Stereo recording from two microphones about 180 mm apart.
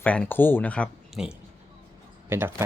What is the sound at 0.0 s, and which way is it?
Speech, 10° left (ahead or behind).